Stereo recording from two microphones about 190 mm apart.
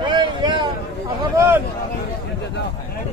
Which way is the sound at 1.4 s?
10° right (ahead or behind).